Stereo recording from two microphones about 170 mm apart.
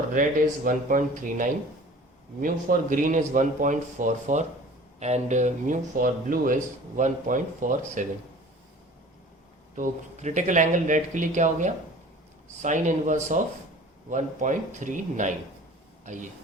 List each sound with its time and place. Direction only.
0.1 s speech: 50° right (ahead or behind)
9.7 s speech: 45° right (ahead or behind)